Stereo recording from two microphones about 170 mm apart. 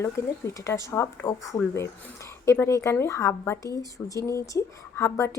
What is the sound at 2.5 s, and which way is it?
A woman's voice, 15° left (ahead or behind).